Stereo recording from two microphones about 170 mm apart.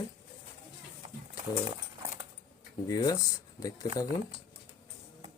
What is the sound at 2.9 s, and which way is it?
Speech, 20° left (ahead or behind).